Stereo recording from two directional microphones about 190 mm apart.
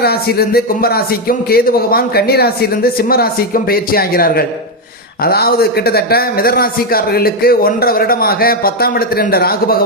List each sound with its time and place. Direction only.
0.0 s a man's voice: 55° left (ahead or behind)